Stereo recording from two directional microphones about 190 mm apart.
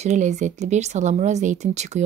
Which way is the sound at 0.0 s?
40° right (ahead or behind).